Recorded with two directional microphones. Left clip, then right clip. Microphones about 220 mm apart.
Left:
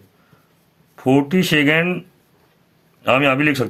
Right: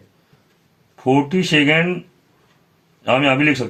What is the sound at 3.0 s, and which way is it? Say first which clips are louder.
Speech: even; 25° left (ahead or behind).